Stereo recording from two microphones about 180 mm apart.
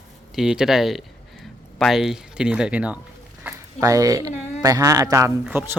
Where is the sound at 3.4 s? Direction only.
15° right (ahead or behind).